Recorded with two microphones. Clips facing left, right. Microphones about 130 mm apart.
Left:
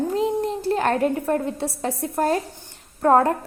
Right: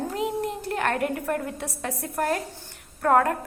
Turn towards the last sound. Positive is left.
turn(degrees=25)  # may be behind; listen again after turning